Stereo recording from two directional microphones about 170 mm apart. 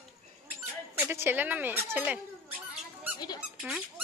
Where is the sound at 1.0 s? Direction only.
10° right (ahead or behind).